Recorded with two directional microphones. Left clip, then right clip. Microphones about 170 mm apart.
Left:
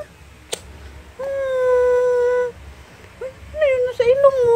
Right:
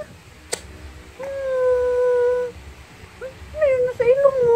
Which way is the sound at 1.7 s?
35° left (ahead or behind).